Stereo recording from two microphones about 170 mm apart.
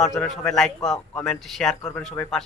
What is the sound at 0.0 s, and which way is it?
A man's voice, centre (ahead or behind).